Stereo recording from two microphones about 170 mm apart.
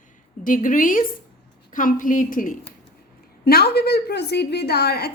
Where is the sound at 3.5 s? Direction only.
70° left (ahead or behind).